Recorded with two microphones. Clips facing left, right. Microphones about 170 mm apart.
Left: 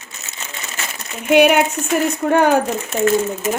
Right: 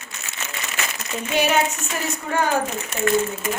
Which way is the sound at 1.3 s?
60° left (ahead or behind).